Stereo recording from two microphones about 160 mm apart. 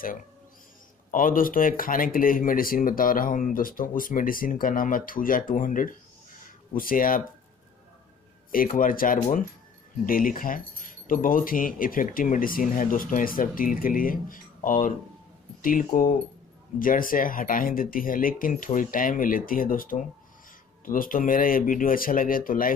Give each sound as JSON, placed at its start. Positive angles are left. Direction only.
{"t": 1.1, "sound": "speech", "side_deg": 60}
{"t": 8.5, "sound": "speech", "side_deg": 60}